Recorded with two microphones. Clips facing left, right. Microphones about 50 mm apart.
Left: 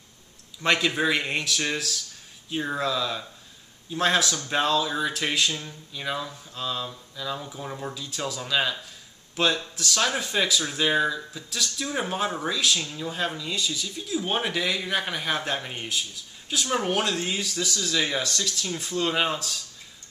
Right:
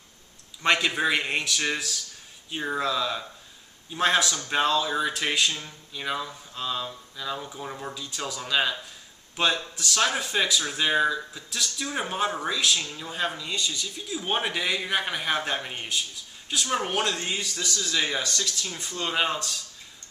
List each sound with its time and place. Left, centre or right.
0.6 s speech: centre